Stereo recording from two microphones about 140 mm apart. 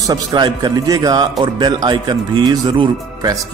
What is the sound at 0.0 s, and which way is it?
Speech, 25° right (ahead or behind).